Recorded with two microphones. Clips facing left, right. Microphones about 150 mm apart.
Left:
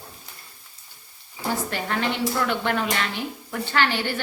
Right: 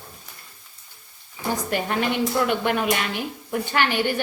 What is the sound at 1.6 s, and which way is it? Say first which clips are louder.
A woman's voice: right 2 dB; 15° right (ahead or behind).